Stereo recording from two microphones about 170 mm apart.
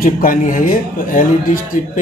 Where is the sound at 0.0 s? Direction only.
55° left (ahead or behind).